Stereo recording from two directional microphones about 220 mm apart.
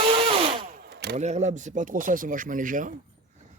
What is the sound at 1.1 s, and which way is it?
Speech, 30° right (ahead or behind).